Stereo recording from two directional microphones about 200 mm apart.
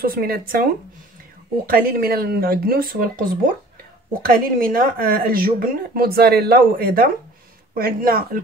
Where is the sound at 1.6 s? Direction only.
45° right (ahead or behind).